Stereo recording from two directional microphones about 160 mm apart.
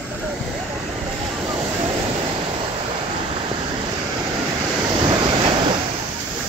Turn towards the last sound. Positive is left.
turn(degrees=-30)  # may be behind; listen again after turning